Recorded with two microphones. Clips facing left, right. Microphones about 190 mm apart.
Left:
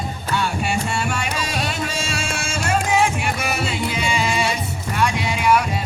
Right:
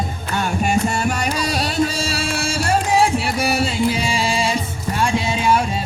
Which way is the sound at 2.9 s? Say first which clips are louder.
Right 3 dB; 35° right (ahead or behind).